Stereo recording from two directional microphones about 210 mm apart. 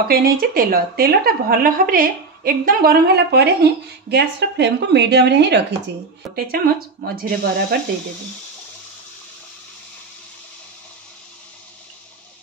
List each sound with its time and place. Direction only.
0.1 s a woman's voice: 45° right (ahead or behind)